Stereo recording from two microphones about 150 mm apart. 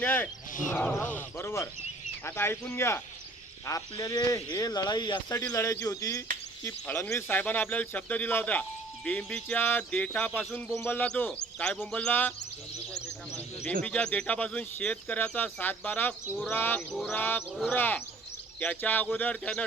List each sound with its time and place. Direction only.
0.0 s speech: 10° left (ahead or behind)
13.8 s speech: 10° left (ahead or behind)
16.9 s a sound: centre (ahead or behind)
17.2 s speech: 10° left (ahead or behind)